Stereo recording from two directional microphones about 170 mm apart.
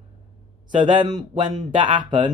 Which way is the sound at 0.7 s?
30° right (ahead or behind).